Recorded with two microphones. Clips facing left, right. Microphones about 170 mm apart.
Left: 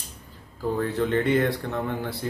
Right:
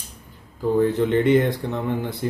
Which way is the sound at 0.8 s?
20° right (ahead or behind).